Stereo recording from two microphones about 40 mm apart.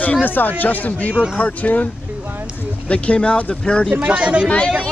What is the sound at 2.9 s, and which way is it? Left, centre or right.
Speech, left.